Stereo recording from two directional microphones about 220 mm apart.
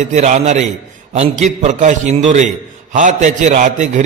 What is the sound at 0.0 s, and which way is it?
A man's voice, 30° right (ahead or behind).